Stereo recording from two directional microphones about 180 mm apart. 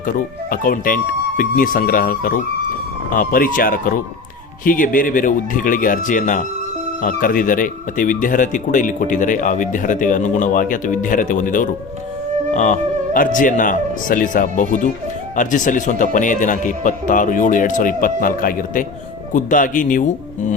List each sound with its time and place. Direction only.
0.5 s speech: 50° left (ahead or behind)